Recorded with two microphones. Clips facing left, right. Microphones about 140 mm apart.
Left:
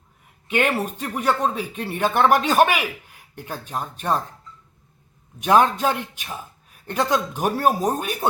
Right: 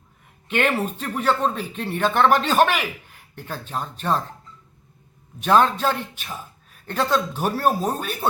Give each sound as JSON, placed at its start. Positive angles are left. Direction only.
{"t": 0.4, "sound": "speech", "side_deg": 10}
{"t": 5.4, "sound": "speech", "side_deg": 15}